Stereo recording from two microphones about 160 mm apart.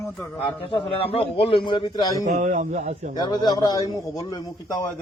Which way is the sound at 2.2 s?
50° right (ahead or behind).